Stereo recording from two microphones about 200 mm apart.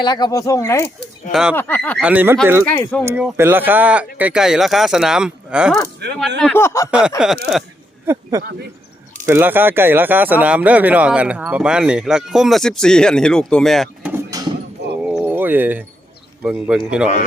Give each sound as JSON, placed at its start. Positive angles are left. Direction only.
{"t": 0.0, "sound": "speech", "side_deg": 20}
{"t": 1.3, "sound": "speech", "side_deg": -5}
{"t": 1.5, "sound": "speech", "side_deg": 10}
{"t": 2.0, "sound": "speech", "side_deg": -5}
{"t": 2.6, "sound": "speech", "side_deg": 5}
{"t": 3.0, "sound": "speech", "side_deg": -10}
{"t": 6.0, "sound": "speech", "side_deg": -55}
{"t": 6.4, "sound": "speech", "side_deg": 10}
{"t": 8.0, "sound": "speech", "side_deg": -15}
{"t": 14.1, "sound": "mechanisms", "side_deg": -15}
{"t": 15.0, "sound": "a sound", "side_deg": -5}
{"t": 16.4, "sound": "speech", "side_deg": -5}